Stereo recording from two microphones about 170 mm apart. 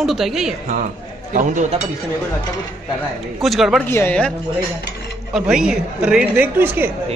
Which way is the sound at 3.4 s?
Centre (ahead or behind).